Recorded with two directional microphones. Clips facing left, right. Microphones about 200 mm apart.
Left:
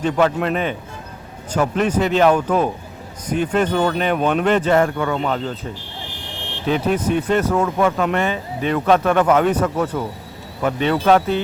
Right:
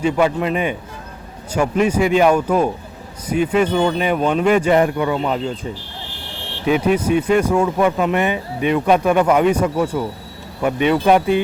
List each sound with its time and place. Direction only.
0.0 s speech: 10° right (ahead or behind)
6.1 s vehicle: 15° left (ahead or behind)
6.7 s speech: 10° right (ahead or behind)